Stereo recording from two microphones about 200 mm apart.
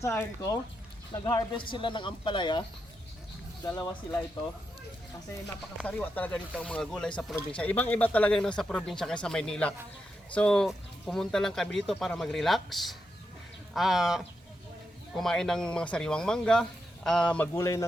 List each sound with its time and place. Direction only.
0.0 s speech: 15° left (ahead or behind)
5.8 s speech: 10° left (ahead or behind)